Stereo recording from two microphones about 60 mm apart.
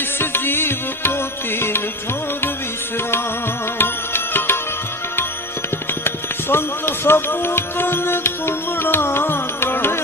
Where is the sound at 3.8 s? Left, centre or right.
Left.